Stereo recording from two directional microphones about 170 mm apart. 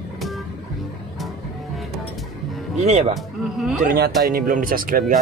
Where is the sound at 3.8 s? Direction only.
60° right (ahead or behind).